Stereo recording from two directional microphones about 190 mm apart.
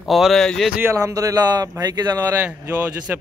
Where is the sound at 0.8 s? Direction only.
15° right (ahead or behind).